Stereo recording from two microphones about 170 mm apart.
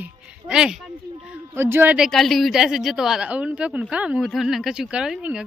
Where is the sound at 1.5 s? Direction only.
15° right (ahead or behind).